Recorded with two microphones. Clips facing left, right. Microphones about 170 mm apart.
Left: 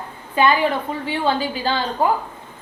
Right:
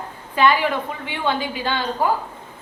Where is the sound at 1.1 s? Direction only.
35° left (ahead or behind).